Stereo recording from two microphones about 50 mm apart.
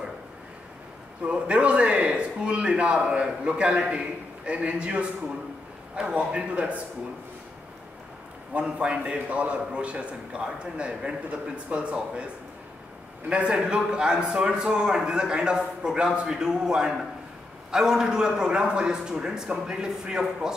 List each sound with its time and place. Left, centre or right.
1.2 s a man's voice: right
8.6 s a man's voice: right
13.3 s a man's voice: right